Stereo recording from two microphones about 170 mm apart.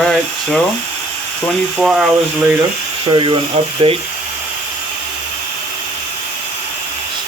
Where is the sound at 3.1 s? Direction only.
30° right (ahead or behind).